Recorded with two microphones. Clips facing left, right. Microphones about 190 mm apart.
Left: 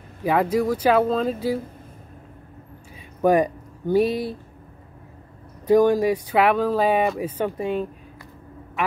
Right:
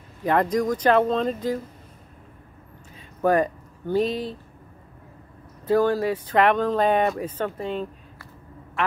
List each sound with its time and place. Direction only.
0.2 s speech: 5° left (ahead or behind)
3.2 s speech: 10° left (ahead or behind)
5.7 s speech: 15° left (ahead or behind)